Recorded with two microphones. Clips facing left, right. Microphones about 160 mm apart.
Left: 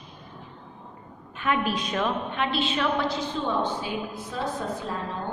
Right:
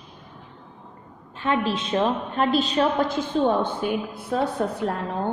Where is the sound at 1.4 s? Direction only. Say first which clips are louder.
Right 2 dB; 30° right (ahead or behind); by 4.9 s 65° right (ahead or behind).